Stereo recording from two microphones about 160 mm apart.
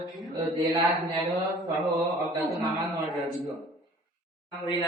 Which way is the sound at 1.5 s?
Centre (ahead or behind).